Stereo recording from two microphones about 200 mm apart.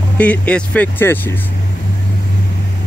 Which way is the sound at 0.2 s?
5° left (ahead or behind).